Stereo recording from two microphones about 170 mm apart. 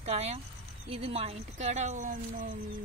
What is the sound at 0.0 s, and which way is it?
Speech, 40° right (ahead or behind).